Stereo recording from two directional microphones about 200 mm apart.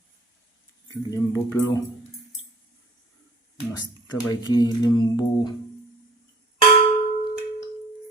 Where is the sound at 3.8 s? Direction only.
20° left (ahead or behind).